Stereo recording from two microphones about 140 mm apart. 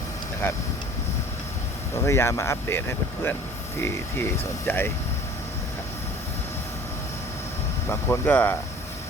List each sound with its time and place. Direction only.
0.4 s speech: 15° left (ahead or behind)
2.0 s speech: 20° left (ahead or behind)
3.8 s speech: 15° left (ahead or behind)
7.9 s speech: 15° left (ahead or behind)